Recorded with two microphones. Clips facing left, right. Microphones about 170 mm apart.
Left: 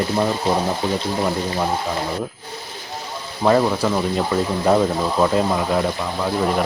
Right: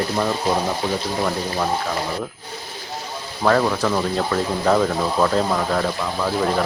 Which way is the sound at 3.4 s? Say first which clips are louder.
Left 1 dB; 15° left (ahead or behind).